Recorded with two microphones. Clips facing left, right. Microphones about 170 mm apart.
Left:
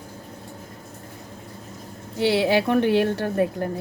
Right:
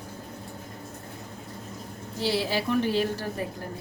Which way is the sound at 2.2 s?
65° left (ahead or behind).